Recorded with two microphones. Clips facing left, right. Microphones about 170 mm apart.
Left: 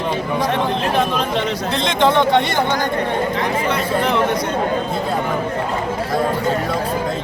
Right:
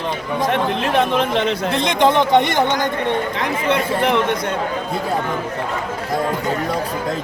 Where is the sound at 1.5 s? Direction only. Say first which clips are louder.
Right 1 dB; 15° right (ahead or behind).